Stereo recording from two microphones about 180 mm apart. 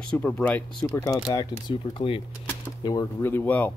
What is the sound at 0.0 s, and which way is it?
Speech, 10° left (ahead or behind).